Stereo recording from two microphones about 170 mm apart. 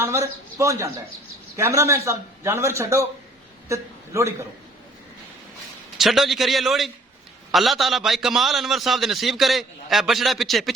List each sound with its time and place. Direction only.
0.0 s a man's voice: 15° right (ahead or behind)
6.0 s a man's voice: centre (ahead or behind)